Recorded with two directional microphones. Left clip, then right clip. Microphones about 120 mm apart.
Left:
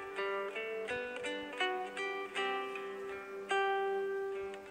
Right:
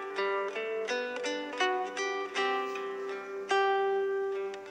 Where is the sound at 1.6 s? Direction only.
35° right (ahead or behind).